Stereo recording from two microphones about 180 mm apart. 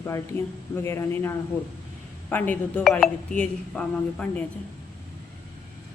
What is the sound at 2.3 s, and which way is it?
Speech, 10° left (ahead or behind).